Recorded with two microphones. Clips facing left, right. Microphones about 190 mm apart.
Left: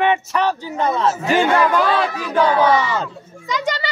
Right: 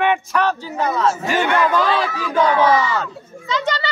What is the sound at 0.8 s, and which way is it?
Speech, 25° left (ahead or behind).